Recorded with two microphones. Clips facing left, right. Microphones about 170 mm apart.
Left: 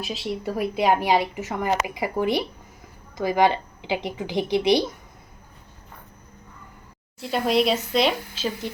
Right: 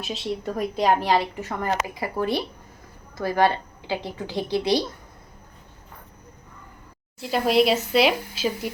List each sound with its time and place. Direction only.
0.0 s speech: centre (ahead or behind); by 4.8 s 20° left (ahead or behind)
7.2 s speech: centre (ahead or behind)